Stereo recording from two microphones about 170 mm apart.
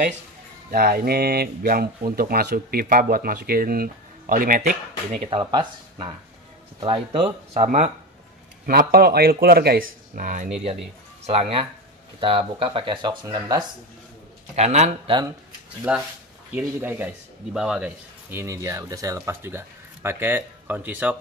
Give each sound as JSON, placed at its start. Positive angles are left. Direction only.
{"t": 0.7, "sound": "speech", "side_deg": -55}
{"t": 5.4, "sound": "speech", "side_deg": -25}
{"t": 8.6, "sound": "speech", "side_deg": -60}
{"t": 11.2, "sound": "speech", "side_deg": -35}
{"t": 14.5, "sound": "speech", "side_deg": -40}
{"t": 15.9, "sound": "a man's voice", "side_deg": -5}